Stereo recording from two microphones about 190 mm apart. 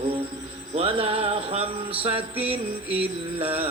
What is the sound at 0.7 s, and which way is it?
Mantra, 30° right (ahead or behind).